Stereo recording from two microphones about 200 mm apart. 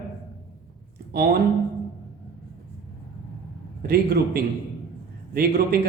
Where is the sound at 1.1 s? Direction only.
50° right (ahead or behind).